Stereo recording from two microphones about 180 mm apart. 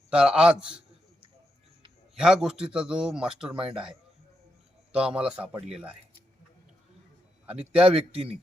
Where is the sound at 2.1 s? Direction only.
5° right (ahead or behind).